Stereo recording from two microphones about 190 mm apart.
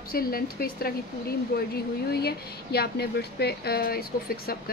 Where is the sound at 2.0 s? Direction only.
55° left (ahead or behind).